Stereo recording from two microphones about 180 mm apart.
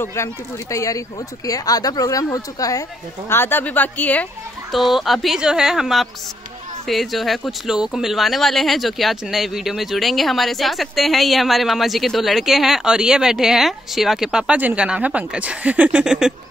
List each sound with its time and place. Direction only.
0.0 s speech: 15° left (ahead or behind); by 16.3 s 5° right (ahead or behind)